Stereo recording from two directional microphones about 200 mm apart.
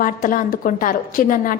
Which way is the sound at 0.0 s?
45° left (ahead or behind).